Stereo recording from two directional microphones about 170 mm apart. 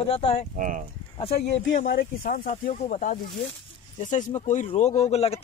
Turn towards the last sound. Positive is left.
turn(degrees=40)  # may be behind; listen again after turning